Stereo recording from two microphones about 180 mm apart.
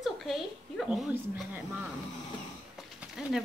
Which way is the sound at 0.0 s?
Centre (ahead or behind).